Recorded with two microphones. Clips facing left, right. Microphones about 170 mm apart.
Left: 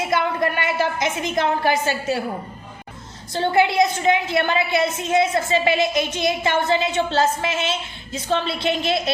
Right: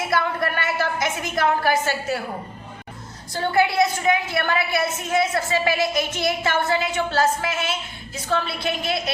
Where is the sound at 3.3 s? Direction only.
20° left (ahead or behind).